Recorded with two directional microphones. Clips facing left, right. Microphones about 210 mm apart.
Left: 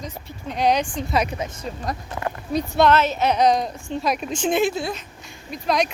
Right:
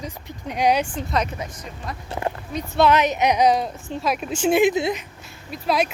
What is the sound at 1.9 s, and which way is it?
Speech, 40° left (ahead or behind).